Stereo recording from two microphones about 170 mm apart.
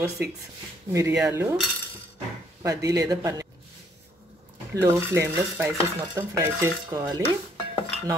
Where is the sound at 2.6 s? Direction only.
20° right (ahead or behind).